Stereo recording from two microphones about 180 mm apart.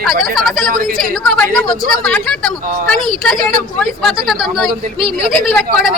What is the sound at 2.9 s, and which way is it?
Speech, 5° left (ahead or behind).